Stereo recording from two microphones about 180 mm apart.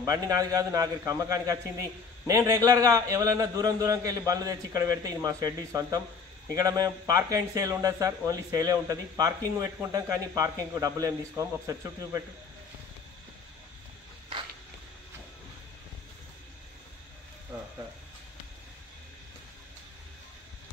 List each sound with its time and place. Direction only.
0.0 s a man's voice: 20° right (ahead or behind)